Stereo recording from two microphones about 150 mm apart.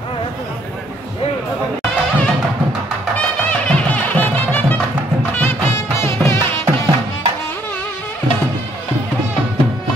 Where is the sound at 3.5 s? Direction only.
10° left (ahead or behind).